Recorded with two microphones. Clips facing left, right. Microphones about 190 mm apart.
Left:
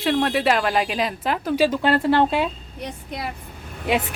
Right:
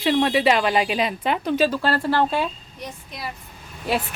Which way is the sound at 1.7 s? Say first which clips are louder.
Left 3 dB; 20° left (ahead or behind).